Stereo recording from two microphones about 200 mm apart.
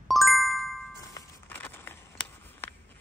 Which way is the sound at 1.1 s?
15° left (ahead or behind).